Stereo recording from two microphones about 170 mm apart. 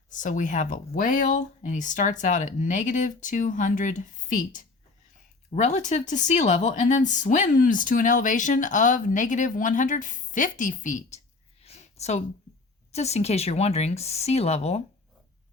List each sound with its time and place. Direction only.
0.1 s speech: 50° left (ahead or behind)
11.6 s a sound: 40° left (ahead or behind)
12.9 s speech: 40° left (ahead or behind)